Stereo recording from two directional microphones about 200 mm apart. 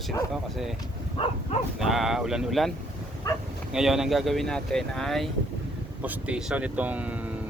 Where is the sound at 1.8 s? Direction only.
Centre (ahead or behind).